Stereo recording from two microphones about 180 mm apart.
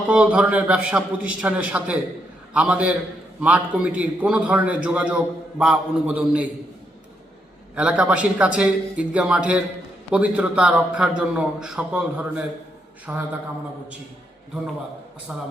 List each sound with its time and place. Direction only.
0.1 s a man's voice: 5° right (ahead or behind)
7.8 s a man's voice: 5° right (ahead or behind)
15.3 s a man's voice: 5° right (ahead or behind)